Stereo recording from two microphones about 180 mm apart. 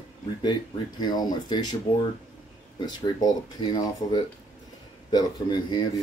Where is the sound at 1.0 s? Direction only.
25° left (ahead or behind).